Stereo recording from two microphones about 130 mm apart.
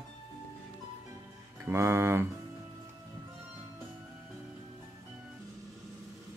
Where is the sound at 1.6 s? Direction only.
20° right (ahead or behind).